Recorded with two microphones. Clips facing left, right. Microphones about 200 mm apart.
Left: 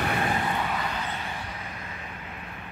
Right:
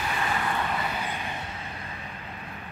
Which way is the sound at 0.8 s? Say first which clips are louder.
Even; 10° right (ahead or behind).